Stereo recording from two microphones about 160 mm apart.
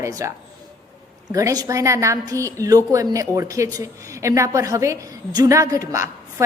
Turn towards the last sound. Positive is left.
turn(degrees=-20)  # may be behind; listen again after turning